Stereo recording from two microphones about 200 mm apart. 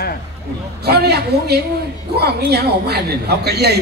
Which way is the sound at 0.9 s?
55° right (ahead or behind).